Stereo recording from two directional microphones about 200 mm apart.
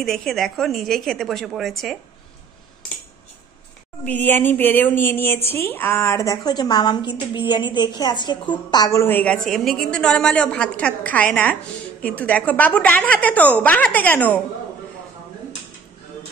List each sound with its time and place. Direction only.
0.0 s a woman's voice: centre (ahead or behind)
4.0 s a woman's voice: 10° left (ahead or behind)